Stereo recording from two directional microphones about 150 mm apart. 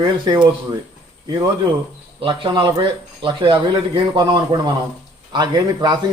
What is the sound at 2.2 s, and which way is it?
A man's voice, 35° right (ahead or behind).